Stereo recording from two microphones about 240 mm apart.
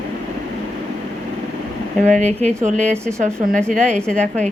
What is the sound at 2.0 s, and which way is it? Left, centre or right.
A woman's voice, right.